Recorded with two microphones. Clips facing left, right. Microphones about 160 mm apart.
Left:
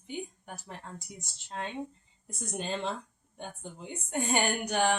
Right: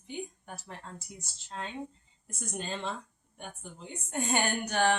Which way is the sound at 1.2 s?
15° left (ahead or behind).